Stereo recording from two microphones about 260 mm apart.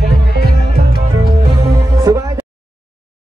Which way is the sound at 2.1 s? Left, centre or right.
Centre.